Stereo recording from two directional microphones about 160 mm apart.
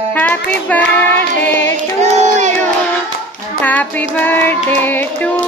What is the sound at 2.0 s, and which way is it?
Child singing, 45° right (ahead or behind).